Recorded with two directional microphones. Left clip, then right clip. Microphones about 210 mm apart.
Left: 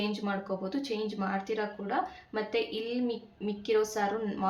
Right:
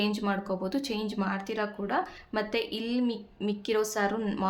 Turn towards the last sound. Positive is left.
turn(degrees=-50)  # may be behind; listen again after turning